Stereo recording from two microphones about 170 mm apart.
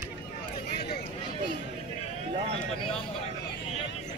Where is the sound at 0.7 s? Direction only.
70° left (ahead or behind).